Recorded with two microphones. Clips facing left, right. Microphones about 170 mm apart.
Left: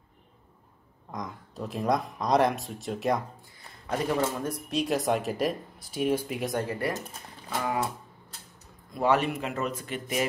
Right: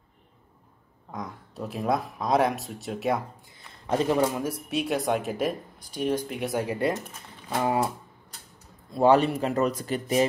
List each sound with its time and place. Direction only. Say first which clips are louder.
1.1 s speech: right 1 dB; centre (ahead or behind)
3.9 s a man's voice: right 4 dB; 20° right (ahead or behind)
4.4 s speech: right 1 dB; 5° right (ahead or behind)
7.5 s a man's voice: right 4 dB; 25° right (ahead or behind)
8.9 s speech: right 5 dB; 30° right (ahead or behind)